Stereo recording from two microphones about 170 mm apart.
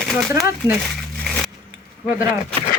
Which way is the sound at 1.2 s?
Centre (ahead or behind).